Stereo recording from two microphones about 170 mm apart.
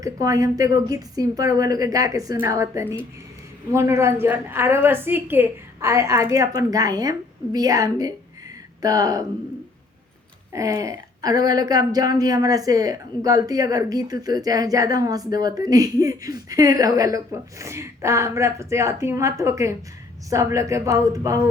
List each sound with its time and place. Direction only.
0.0 s a woman's voice: 20° right (ahead or behind)
10.5 s a woman's voice: 20° right (ahead or behind)